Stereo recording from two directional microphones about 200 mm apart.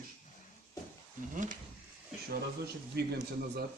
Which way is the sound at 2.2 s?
55° right (ahead or behind).